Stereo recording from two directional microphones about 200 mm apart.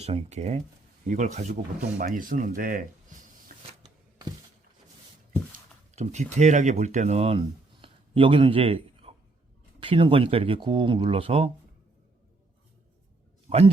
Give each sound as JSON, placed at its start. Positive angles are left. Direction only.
{"t": 0.0, "sound": "speech", "side_deg": -35}
{"t": 6.0, "sound": "speech", "side_deg": -35}